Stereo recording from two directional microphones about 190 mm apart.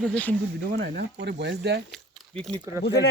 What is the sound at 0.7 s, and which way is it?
Speech, 65° right (ahead or behind).